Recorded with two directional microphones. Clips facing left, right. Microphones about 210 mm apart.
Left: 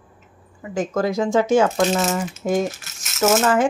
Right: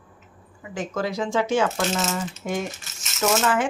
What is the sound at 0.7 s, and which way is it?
Speech, 45° left (ahead or behind).